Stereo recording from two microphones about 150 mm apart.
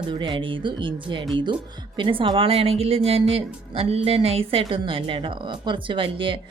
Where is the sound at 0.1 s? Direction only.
30° right (ahead or behind).